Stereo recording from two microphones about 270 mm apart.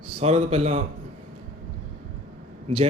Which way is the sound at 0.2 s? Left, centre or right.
Right.